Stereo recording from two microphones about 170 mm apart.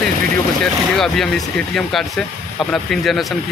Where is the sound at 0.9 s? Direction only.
Centre (ahead or behind).